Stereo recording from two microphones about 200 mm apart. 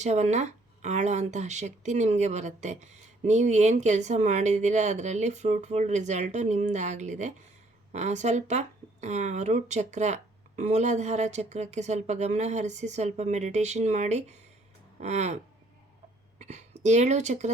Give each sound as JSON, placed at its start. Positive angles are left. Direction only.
{"t": 0.0, "sound": "speech", "side_deg": -35}
{"t": 16.4, "sound": "speech", "side_deg": -35}